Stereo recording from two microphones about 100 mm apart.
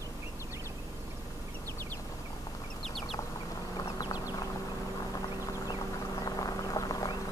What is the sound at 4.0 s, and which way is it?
Clip-clop, 40° left (ahead or behind).